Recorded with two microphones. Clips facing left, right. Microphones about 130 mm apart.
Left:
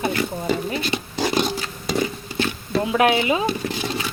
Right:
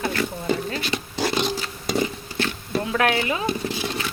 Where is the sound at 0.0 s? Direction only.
20° left (ahead or behind).